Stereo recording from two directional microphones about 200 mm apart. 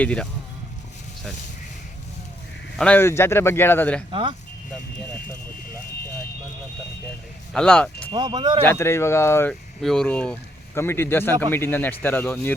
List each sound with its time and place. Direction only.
0.0 s speech: 5° left (ahead or behind)
2.7 s a man's voice: 5° left (ahead or behind)
4.1 s speech: 25° right (ahead or behind)
7.5 s speech: 5° left (ahead or behind)
8.1 s speech: 25° right (ahead or behind)
8.6 s a man's voice: 10° left (ahead or behind)